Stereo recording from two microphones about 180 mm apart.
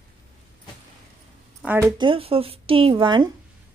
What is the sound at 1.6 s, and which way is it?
Speech, 10° right (ahead or behind).